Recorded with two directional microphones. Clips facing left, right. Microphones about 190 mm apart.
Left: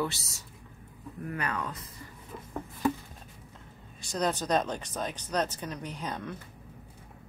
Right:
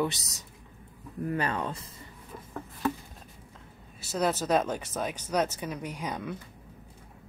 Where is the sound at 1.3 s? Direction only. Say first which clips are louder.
Right 4 dB; 30° right (ahead or behind).